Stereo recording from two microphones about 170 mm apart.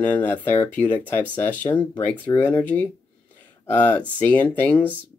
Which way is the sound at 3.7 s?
10° left (ahead or behind).